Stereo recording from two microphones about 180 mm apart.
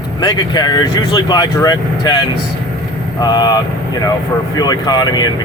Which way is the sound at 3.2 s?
20° left (ahead or behind).